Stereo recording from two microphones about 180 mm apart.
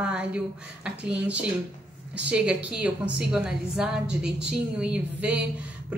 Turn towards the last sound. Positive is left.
turn(degrees=-10)  # may be behind; listen again after turning